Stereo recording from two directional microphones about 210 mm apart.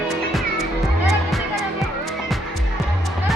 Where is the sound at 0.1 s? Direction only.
Centre (ahead or behind).